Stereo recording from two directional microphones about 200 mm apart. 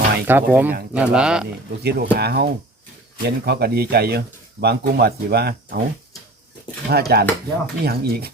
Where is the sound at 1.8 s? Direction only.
55° right (ahead or behind).